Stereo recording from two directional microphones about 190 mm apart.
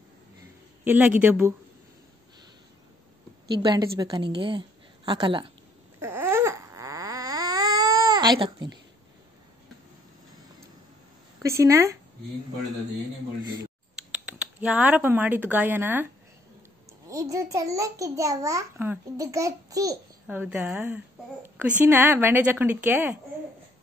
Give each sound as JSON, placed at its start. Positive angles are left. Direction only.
{"t": 0.8, "sound": "a child's voice", "side_deg": -10}
{"t": 3.5, "sound": "a woman's voice", "side_deg": -20}
{"t": 5.9, "sound": "a sound", "side_deg": -10}
{"t": 11.6, "sound": "a child's voice", "side_deg": -15}
{"t": 13.4, "sound": "a woman's voice", "side_deg": -20}
{"t": 13.9, "sound": "speech", "side_deg": -5}
{"t": 17.1, "sound": "a child's voice", "side_deg": -20}